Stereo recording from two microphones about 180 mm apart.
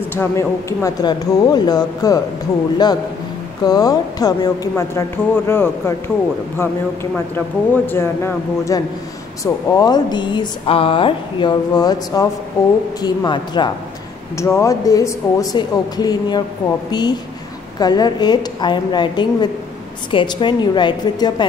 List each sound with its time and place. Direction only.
0.1 s speech: 15° left (ahead or behind)
3.6 s speech: 20° left (ahead or behind)
7.3 s speech: 10° left (ahead or behind)